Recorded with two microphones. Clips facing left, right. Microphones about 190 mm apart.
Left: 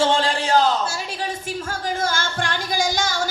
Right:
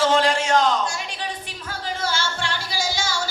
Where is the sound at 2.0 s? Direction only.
50° left (ahead or behind).